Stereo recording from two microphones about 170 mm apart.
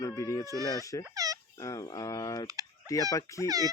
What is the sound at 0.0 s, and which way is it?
Speech, 20° left (ahead or behind).